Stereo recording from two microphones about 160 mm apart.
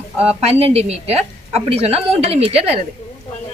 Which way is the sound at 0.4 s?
40° right (ahead or behind).